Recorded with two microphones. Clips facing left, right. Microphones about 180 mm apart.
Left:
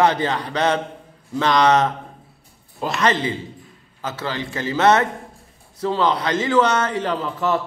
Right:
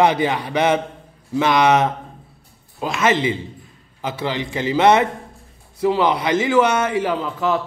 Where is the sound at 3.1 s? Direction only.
15° right (ahead or behind); by 7.6 s centre (ahead or behind).